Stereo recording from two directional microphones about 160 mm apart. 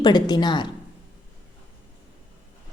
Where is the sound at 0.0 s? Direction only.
25° left (ahead or behind).